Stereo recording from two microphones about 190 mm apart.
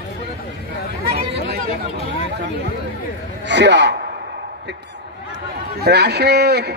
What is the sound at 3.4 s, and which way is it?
Speech, 65° right (ahead or behind).